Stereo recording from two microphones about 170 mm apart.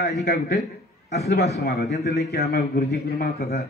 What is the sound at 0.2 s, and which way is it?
A man's voice, 70° left (ahead or behind).